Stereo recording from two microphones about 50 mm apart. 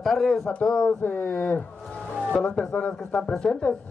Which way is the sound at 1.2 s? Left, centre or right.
Left.